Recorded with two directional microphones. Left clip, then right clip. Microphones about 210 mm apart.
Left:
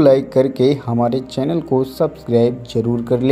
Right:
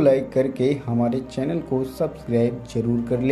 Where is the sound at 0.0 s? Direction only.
35° left (ahead or behind).